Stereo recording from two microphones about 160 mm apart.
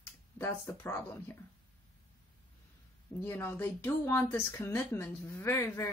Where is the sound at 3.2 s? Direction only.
15° left (ahead or behind).